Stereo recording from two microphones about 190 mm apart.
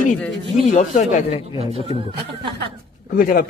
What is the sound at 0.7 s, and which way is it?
A man's voice, 40° left (ahead or behind).